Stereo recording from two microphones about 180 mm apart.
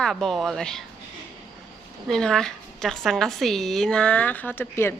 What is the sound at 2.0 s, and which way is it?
A woman's voice, centre (ahead or behind).